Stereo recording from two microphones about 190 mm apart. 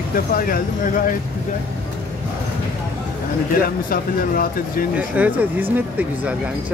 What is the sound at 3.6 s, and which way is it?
Speech, 50° left (ahead or behind).